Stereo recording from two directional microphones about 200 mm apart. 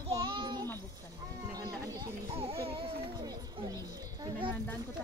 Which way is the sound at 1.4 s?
20° right (ahead or behind).